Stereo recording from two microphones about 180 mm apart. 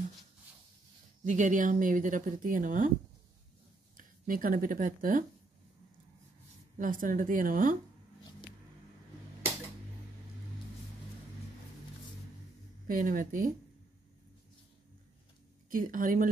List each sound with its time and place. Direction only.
1.2 s speech: 45° right (ahead or behind)
3.9 s speech: 50° right (ahead or behind)
6.8 s speech: 50° right (ahead or behind)
12.8 s speech: 50° right (ahead or behind)
15.7 s speech: 50° right (ahead or behind)